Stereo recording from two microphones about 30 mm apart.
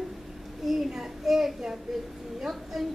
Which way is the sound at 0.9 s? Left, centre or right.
Centre.